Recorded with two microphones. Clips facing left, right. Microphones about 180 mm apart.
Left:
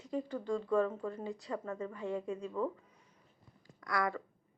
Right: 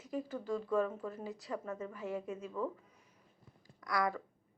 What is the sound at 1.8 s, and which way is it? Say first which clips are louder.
Speech: left 2 dB; 20° right (ahead or behind).